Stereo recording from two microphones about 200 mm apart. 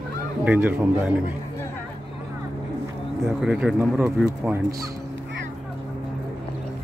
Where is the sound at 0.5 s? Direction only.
5° right (ahead or behind).